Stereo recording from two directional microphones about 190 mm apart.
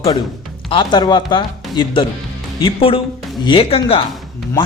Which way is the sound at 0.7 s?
25° left (ahead or behind).